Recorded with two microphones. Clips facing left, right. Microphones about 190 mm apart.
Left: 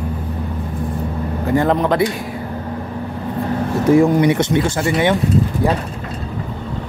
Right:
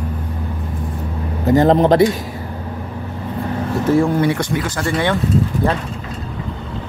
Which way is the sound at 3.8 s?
15° left (ahead or behind).